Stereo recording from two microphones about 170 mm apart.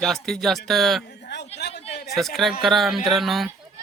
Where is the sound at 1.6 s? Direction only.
75° left (ahead or behind).